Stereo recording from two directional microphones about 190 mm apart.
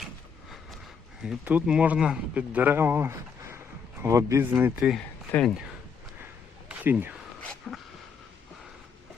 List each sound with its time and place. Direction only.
1.2 s a man's voice: 5° right (ahead or behind)
6.7 s a sound: 10° right (ahead or behind)
7.7 s speech: 5° left (ahead or behind)